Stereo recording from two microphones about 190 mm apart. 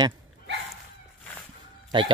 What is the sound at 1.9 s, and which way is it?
Speech, 25° right (ahead or behind).